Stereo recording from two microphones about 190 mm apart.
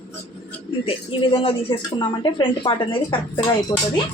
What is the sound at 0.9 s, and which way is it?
Speech, 30° left (ahead or behind).